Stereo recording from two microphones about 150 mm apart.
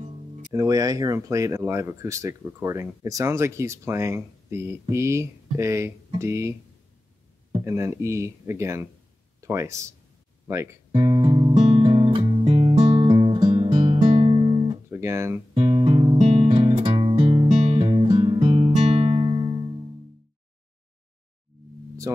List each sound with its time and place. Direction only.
0.5 s speech: 25° right (ahead or behind)
7.6 s speech: 20° right (ahead or behind)
10.9 s music: 35° right (ahead or behind)
14.9 s guitar: 15° right (ahead or behind)
15.5 s music: 35° right (ahead or behind)
22.1 s a sound: 20° right (ahead or behind)